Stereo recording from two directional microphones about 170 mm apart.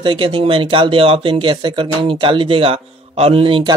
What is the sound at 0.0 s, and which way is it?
Speech, 30° right (ahead or behind).